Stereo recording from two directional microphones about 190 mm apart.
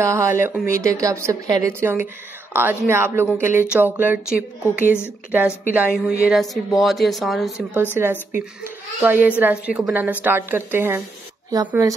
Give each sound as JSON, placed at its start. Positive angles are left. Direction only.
{"t": 0.0, "sound": "a child's voice", "side_deg": -15}
{"t": 7.7, "sound": "a child's voice", "side_deg": -10}